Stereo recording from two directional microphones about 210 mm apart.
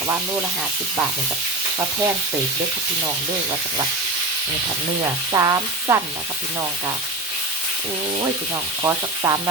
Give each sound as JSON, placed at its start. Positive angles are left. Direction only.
{"t": 5.3, "sound": "frying", "side_deg": -15}
{"t": 8.8, "sound": "frying", "side_deg": -15}